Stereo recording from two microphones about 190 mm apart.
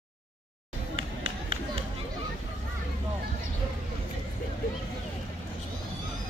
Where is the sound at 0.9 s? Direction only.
25° right (ahead or behind).